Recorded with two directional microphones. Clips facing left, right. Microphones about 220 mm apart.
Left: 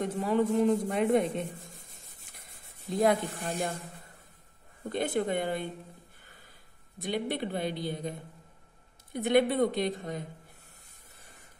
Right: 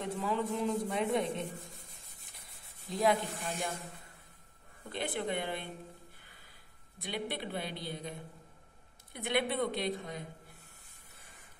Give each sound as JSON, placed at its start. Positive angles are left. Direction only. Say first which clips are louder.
{"t": 0.0, "sound": "speech", "louder": "left 7 dB", "side_deg": 45}
{"t": 3.0, "sound": "speech", "louder": "left 4 dB", "side_deg": 45}
{"t": 4.9, "sound": "speech", "louder": "left 6 dB", "side_deg": 45}
{"t": 7.0, "sound": "speech", "louder": "left 7 dB", "side_deg": 45}
{"t": 9.1, "sound": "speech", "louder": "left 8 dB", "side_deg": 45}